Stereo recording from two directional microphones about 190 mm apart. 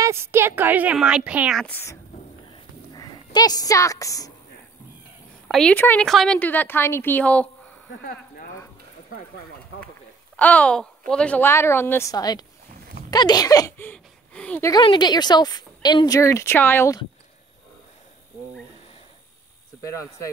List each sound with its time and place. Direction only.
0.0 s a woman's voice: 15° right (ahead or behind)
1.6 s a woman's voice: 10° left (ahead or behind)
2.5 s a sound: 20° left (ahead or behind)
5.5 s a woman's voice: 5° left (ahead or behind)
10.3 s a woman's voice: 10° left (ahead or behind)
14.7 s speech: 25° left (ahead or behind)
19.8 s a woman's voice: 15° left (ahead or behind)